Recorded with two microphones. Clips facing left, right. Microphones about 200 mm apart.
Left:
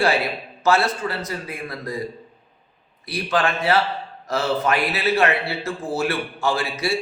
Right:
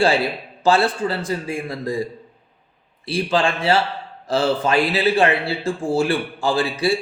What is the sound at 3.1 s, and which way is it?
A man's voice, 30° right (ahead or behind).